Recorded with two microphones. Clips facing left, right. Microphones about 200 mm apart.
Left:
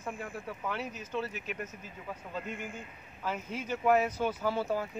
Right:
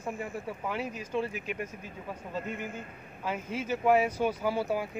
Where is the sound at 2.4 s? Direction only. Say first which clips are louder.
Right 3 dB; 50° right (ahead or behind).